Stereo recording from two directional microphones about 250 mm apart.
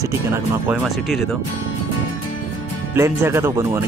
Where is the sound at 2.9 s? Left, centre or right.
Centre.